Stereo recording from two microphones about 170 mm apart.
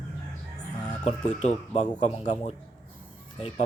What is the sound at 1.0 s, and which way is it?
A man's voice, 45° left (ahead or behind).